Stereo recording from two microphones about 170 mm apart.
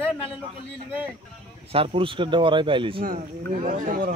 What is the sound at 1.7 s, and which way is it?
Speech, 30° right (ahead or behind).